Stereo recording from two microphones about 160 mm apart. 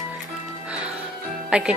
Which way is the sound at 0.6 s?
5° right (ahead or behind).